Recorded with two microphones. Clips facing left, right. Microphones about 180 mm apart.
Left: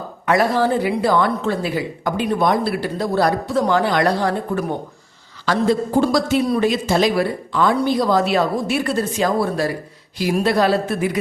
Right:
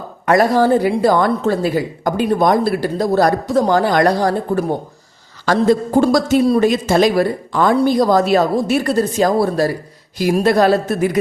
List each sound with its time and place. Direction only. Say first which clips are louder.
0.3 s a woman's voice: right 4 dB; 45° right (ahead or behind)